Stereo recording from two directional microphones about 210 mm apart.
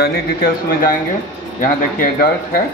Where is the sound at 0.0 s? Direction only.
45° left (ahead or behind).